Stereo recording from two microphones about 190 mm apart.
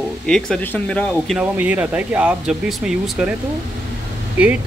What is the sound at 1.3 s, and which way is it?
Speech, 10° right (ahead or behind).